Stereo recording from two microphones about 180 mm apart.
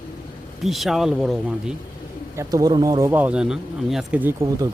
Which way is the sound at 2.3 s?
15° right (ahead or behind).